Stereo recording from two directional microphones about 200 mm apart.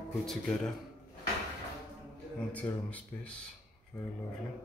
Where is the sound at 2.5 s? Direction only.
5° left (ahead or behind).